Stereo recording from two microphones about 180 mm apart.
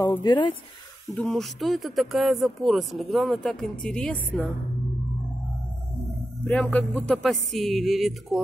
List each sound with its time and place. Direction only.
0.2 s speech: 25° left (ahead or behind)
1.1 s speech: 5° left (ahead or behind)
6.4 s speech: 10° left (ahead or behind)